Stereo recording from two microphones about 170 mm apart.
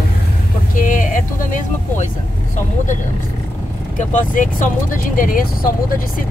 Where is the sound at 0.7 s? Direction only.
50° left (ahead or behind).